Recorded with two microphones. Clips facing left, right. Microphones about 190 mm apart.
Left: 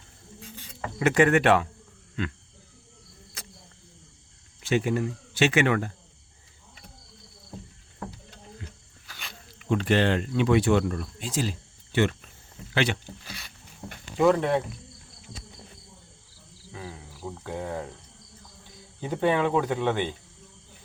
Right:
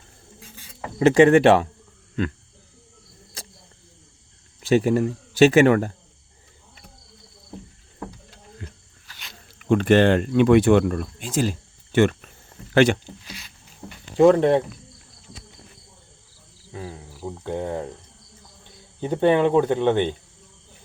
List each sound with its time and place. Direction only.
0.9 s speech: 25° right (ahead or behind)
3.4 s a sound: 30° right (ahead or behind)
4.6 s speech: 40° right (ahead or behind)
8.6 s snake: 60° right (ahead or behind)
9.6 s speech: 55° right (ahead or behind)
14.2 s speech: 30° right (ahead or behind)
16.7 s speech: 25° right (ahead or behind)
18.9 s speech: 25° right (ahead or behind)